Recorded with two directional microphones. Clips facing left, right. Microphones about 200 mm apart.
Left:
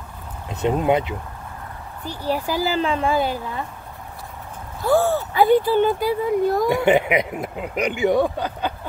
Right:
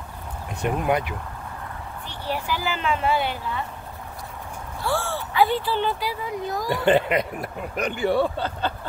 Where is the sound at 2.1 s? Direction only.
40° left (ahead or behind).